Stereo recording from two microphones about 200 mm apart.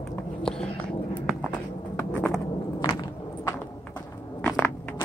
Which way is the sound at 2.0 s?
5° left (ahead or behind).